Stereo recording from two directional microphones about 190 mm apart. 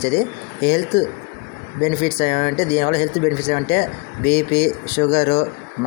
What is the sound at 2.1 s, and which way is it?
Speech, 35° left (ahead or behind).